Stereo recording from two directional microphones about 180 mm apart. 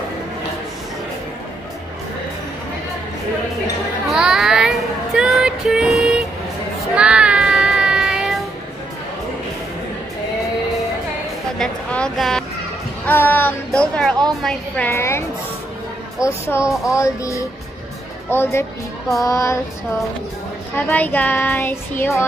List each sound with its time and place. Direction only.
4.1 s child singing: 5° right (ahead or behind)
11.5 s speech: 5° left (ahead or behind)
16.4 s speech: 15° left (ahead or behind)
20.7 s speech: 10° left (ahead or behind)